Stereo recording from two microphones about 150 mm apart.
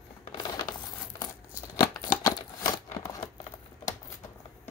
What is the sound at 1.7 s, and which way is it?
Scissors, 25° left (ahead or behind).